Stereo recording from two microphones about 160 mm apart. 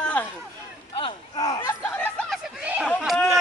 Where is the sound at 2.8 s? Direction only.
5° left (ahead or behind).